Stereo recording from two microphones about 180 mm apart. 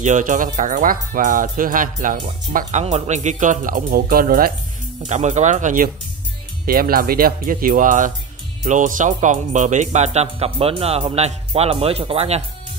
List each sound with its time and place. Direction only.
0.0 s speech: 45° right (ahead or behind)
5.0 s speech: 40° right (ahead or behind)